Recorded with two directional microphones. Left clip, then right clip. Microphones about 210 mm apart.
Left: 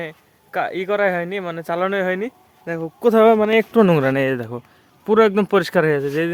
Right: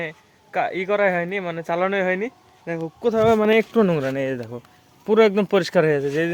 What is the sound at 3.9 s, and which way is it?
Speech, 30° left (ahead or behind).